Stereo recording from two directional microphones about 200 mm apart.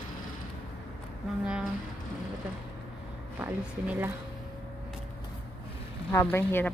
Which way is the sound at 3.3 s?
10° right (ahead or behind).